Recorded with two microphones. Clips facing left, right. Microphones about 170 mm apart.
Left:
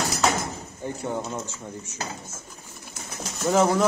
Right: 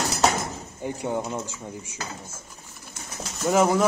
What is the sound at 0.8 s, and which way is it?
Speech, 15° right (ahead or behind).